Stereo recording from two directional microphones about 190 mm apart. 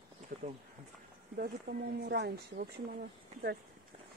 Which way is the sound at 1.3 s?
50° right (ahead or behind).